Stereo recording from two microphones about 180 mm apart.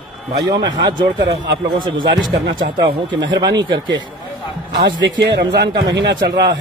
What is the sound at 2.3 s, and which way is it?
Speech, 65° right (ahead or behind).